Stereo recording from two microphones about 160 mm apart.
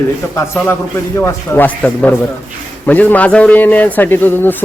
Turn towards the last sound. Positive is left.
turn(degrees=10)  # may be behind; listen again after turning